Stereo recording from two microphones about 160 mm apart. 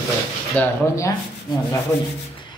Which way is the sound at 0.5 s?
15° left (ahead or behind).